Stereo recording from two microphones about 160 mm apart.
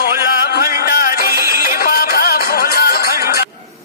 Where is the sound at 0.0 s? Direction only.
65° left (ahead or behind).